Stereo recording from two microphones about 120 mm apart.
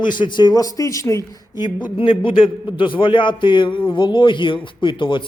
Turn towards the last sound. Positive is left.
turn(degrees=40)  # may be behind; listen again after turning